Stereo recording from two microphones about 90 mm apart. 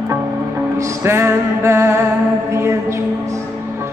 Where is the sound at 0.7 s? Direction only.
30° right (ahead or behind).